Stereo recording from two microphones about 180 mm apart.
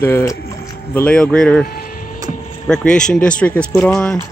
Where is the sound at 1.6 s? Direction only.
55° left (ahead or behind).